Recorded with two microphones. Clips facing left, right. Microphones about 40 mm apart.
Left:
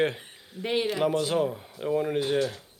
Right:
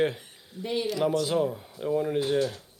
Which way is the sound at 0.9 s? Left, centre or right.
Left.